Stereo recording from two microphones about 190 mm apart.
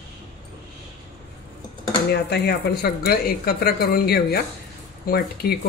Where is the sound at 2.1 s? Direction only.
60° left (ahead or behind).